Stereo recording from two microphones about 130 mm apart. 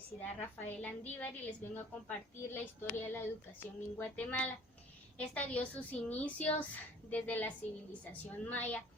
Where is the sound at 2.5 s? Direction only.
15° left (ahead or behind).